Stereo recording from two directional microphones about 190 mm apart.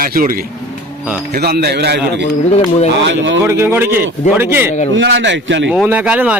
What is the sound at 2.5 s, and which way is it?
Speech, 35° left (ahead or behind).